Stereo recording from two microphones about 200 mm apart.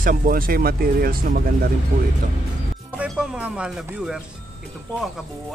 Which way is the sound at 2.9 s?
5° right (ahead or behind).